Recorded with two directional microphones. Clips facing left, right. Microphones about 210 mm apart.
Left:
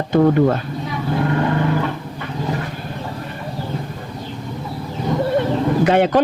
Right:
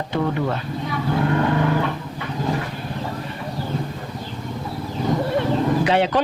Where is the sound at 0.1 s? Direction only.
45° left (ahead or behind).